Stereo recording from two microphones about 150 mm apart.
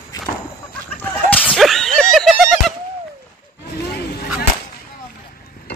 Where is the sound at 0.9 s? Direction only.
10° left (ahead or behind).